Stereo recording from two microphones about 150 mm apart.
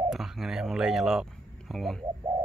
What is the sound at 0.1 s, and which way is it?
Speech, centre (ahead or behind).